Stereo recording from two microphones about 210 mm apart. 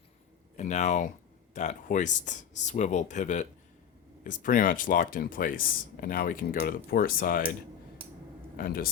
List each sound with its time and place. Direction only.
0.5 s speech: 35° left (ahead or behind)
8.5 s speech: 45° left (ahead or behind)